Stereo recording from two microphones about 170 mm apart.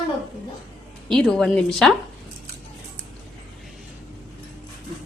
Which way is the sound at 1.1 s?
Centre (ahead or behind).